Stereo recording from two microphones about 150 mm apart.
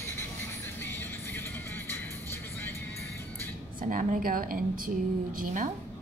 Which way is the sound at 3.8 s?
60° right (ahead or behind).